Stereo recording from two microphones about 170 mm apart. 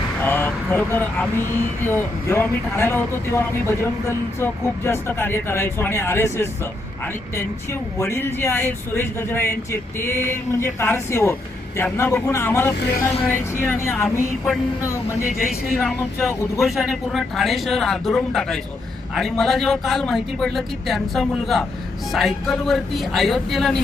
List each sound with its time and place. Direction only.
0.2 s speech: 10° left (ahead or behind)
15.4 s speech: centre (ahead or behind)